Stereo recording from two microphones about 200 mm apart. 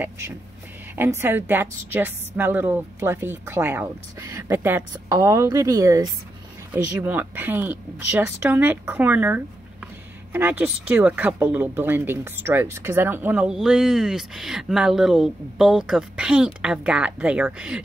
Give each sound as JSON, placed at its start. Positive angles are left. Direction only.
{"t": 0.9, "sound": "a woman's voice", "side_deg": -10}